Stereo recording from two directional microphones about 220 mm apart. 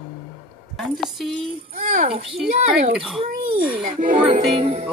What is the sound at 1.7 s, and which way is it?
Music, 35° right (ahead or behind).